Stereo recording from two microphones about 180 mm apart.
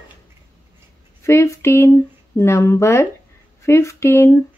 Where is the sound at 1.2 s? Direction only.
15° left (ahead or behind).